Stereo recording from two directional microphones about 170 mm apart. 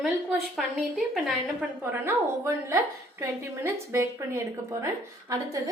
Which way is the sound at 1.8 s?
15° right (ahead or behind).